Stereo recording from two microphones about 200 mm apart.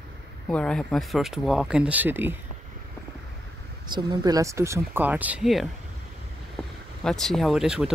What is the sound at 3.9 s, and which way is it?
Speech, 20° right (ahead or behind).